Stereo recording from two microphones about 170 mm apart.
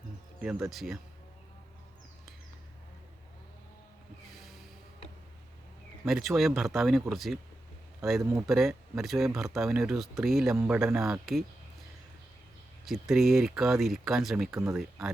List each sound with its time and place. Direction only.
0.4 s speech: centre (ahead or behind)
6.1 s speech: centre (ahead or behind)
8.2 s speech: 20° right (ahead or behind)
8.4 s speech: centre (ahead or behind)
10.5 s speech: 15° right (ahead or behind)
10.8 s speech: centre (ahead or behind)
12.8 s speech: centre (ahead or behind)